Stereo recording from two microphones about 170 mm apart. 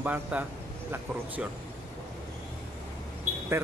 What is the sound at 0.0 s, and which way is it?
Speech, 10° right (ahead or behind).